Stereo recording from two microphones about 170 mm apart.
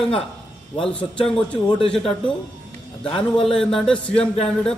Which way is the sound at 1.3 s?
35° left (ahead or behind).